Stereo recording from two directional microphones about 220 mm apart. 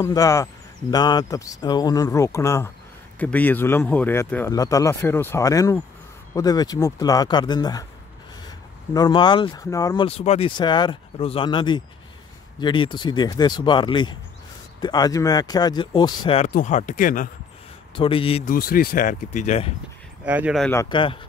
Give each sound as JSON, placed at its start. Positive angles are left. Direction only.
{"t": 0.0, "sound": "speech", "side_deg": 15}
{"t": 16.4, "sound": "speech", "side_deg": 35}
{"t": 17.9, "sound": "speech", "side_deg": 25}
{"t": 18.5, "sound": "speech", "side_deg": 40}
{"t": 20.2, "sound": "speech", "side_deg": -5}
{"t": 20.7, "sound": "speech", "side_deg": 20}